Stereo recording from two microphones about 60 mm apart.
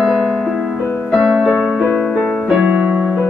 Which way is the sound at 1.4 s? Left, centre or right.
Centre.